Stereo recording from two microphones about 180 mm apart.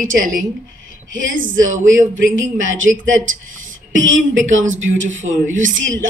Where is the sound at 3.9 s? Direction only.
90° right.